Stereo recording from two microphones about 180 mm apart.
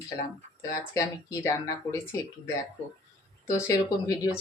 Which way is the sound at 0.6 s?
20° left (ahead or behind).